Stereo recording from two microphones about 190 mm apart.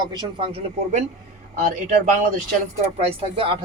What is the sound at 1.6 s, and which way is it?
Speech, 45° right (ahead or behind).